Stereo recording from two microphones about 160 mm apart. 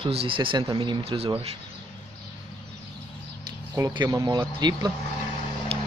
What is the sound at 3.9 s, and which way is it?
Speech, 25° right (ahead or behind).